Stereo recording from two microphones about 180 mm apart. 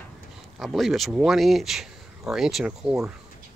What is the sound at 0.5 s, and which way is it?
Speech, centre (ahead or behind).